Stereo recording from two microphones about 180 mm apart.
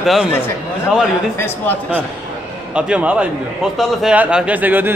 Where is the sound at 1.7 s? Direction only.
10° left (ahead or behind).